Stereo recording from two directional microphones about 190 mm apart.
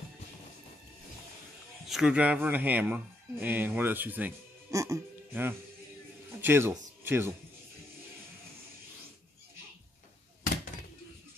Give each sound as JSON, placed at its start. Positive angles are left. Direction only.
{"t": 1.9, "sound": "speech", "side_deg": -5}